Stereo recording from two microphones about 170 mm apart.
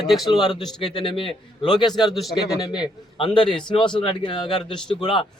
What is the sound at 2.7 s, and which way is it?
A man's voice, 25° left (ahead or behind).